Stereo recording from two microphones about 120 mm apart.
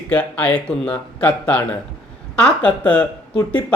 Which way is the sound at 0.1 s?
10° left (ahead or behind).